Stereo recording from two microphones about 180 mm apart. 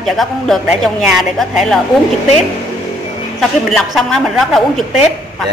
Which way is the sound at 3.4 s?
Centre (ahead or behind).